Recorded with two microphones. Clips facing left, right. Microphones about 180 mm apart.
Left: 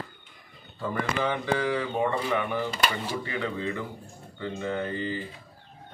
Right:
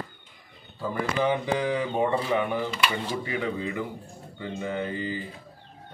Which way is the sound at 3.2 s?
15° right (ahead or behind).